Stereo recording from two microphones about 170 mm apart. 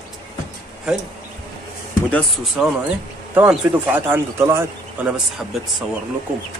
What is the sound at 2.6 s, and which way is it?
Speech, 5° right (ahead or behind).